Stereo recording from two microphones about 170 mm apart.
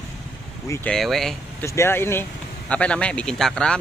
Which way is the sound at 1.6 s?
15° left (ahead or behind).